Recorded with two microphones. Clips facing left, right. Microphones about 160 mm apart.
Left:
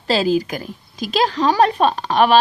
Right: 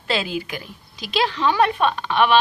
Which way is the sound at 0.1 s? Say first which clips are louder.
Left 7 dB; 35° left (ahead or behind).